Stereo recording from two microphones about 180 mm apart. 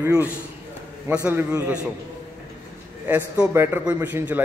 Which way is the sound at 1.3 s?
10° right (ahead or behind).